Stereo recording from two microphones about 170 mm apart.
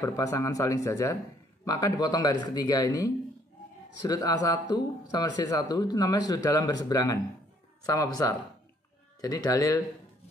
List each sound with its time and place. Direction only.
0.0 s speech: 20° left (ahead or behind)